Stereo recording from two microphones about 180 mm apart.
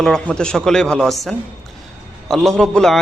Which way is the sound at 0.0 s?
5° left (ahead or behind).